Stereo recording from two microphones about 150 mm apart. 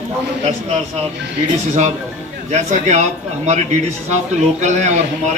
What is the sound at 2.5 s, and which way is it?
Speech, 50° right (ahead or behind).